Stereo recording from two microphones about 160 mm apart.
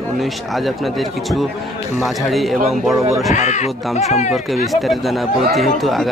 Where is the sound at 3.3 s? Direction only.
50° left (ahead or behind).